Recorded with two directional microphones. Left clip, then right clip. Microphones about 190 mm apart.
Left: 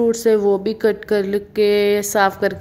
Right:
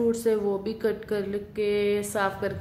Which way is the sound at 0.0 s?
40° left (ahead or behind).